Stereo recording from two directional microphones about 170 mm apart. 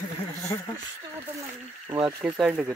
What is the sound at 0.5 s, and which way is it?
Speech, 25° left (ahead or behind).